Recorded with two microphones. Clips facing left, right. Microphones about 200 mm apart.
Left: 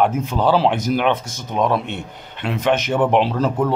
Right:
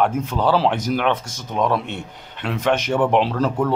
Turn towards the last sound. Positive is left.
turn(degrees=5)  # may be behind; listen again after turning